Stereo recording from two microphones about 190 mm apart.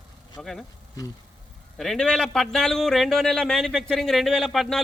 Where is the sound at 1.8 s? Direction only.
5° left (ahead or behind).